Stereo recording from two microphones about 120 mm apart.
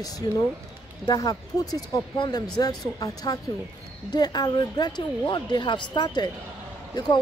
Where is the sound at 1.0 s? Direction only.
35° left (ahead or behind).